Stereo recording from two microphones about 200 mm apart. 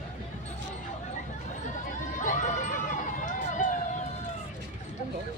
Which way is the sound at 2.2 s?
40° left (ahead or behind).